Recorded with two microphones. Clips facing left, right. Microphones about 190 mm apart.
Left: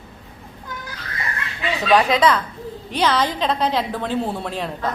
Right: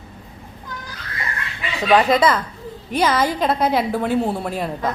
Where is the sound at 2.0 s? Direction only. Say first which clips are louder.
Right 2 dB; 5° right (ahead or behind).